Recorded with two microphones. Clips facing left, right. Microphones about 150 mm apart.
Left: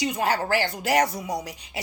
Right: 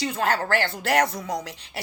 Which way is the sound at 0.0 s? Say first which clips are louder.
Even; 15° left (ahead or behind).